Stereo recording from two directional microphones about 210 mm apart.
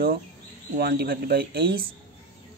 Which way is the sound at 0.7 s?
50° right (ahead or behind).